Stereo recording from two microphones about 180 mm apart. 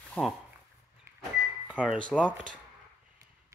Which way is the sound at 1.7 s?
5° right (ahead or behind).